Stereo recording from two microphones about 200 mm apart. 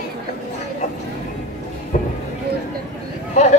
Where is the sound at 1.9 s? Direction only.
40° left (ahead or behind).